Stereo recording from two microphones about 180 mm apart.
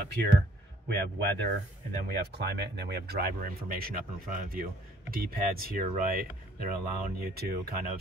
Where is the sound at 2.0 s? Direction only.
65° right (ahead or behind).